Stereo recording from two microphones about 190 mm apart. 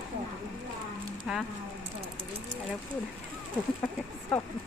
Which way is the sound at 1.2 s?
5° right (ahead or behind).